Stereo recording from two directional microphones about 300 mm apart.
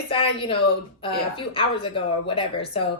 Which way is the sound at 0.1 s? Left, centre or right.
Centre.